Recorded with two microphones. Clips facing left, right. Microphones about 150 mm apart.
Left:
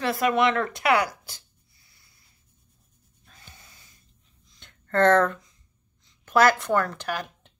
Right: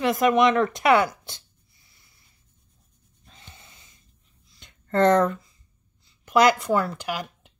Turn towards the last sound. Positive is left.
turn(degrees=-10)  # may be behind; listen again after turning